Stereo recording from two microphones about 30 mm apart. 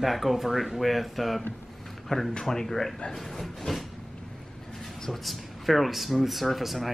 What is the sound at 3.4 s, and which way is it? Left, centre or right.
Speech, centre.